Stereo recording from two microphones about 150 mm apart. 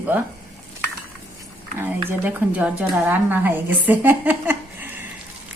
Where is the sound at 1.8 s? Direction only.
15° right (ahead or behind).